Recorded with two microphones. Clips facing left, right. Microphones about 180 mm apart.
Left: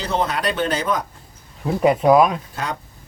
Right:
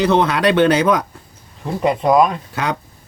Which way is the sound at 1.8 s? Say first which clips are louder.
Even; 5° left (ahead or behind).